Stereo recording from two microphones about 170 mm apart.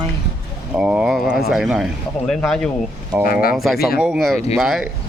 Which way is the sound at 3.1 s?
10° right (ahead or behind).